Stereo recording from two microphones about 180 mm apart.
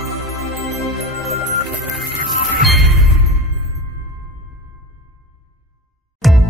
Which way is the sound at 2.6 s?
Centre (ahead or behind).